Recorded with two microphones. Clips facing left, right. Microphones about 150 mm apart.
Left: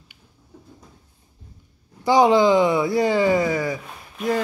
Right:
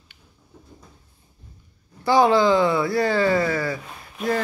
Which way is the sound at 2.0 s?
20° left (ahead or behind).